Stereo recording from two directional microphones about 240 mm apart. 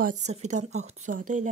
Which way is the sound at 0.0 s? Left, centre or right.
Right.